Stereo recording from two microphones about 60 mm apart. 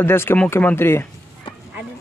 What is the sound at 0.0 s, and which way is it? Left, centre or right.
Speech, left.